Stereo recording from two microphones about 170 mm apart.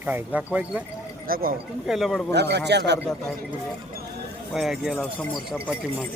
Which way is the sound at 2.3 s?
80° right.